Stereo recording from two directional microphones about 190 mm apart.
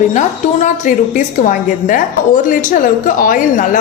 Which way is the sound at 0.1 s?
40° left (ahead or behind).